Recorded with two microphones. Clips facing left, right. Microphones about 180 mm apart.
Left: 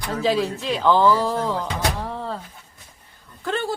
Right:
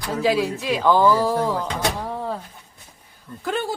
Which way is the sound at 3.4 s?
10° right (ahead or behind).